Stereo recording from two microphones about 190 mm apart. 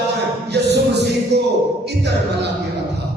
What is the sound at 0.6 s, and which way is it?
Music, 60° right (ahead or behind).